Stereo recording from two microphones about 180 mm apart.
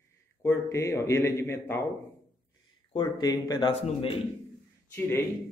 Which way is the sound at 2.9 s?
20° left (ahead or behind).